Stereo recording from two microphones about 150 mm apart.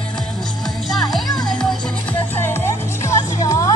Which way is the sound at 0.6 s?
Centre (ahead or behind).